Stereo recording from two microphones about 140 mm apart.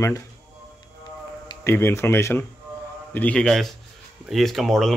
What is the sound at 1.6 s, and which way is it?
Speech, 15° left (ahead or behind).